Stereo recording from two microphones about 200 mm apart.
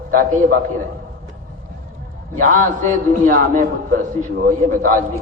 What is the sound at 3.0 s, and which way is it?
A man's voice, 45° right (ahead or behind).